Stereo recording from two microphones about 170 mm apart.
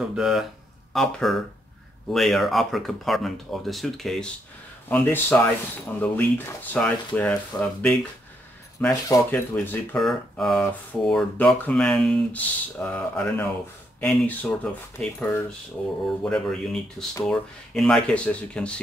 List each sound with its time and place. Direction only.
0.1 s speech: centre (ahead or behind)